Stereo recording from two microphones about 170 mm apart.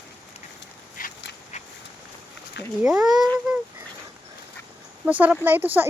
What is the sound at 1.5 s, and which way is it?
Duck, 45° left (ahead or behind).